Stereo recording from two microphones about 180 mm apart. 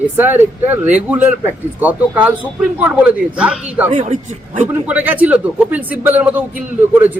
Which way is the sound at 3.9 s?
40° right (ahead or behind).